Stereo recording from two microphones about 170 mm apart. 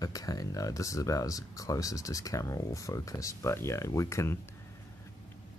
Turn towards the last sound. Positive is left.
turn(degrees=15)  # may be behind; listen again after turning